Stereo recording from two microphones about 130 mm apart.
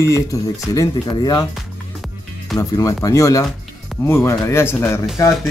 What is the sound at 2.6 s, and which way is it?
Speech, 25° left (ahead or behind).